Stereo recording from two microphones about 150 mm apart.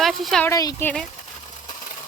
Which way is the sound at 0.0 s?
Centre (ahead or behind).